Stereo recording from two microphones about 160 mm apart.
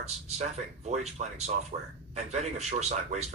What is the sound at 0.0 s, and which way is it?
A man's voice, 45° right (ahead or behind).